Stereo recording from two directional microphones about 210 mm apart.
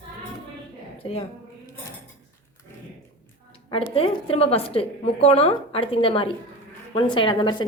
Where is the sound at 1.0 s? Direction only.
25° left (ahead or behind).